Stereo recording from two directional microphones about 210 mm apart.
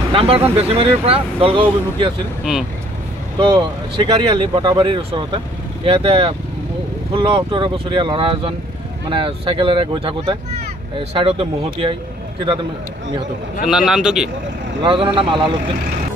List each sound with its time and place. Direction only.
0.1 s speech: 25° right (ahead or behind)
3.3 s speech: 25° right (ahead or behind)
13.7 s a man's voice: 5° right (ahead or behind)
14.8 s speech: 25° right (ahead or behind)